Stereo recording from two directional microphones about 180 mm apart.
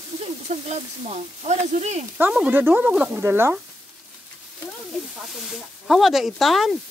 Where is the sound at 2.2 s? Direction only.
10° right (ahead or behind).